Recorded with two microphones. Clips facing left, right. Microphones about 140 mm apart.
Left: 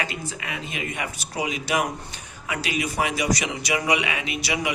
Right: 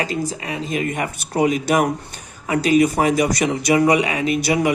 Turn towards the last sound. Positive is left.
turn(degrees=-45)  # may be behind; listen again after turning